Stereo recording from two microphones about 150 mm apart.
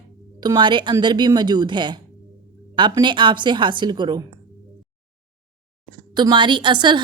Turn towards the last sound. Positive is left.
turn(degrees=-30)  # may be behind; listen again after turning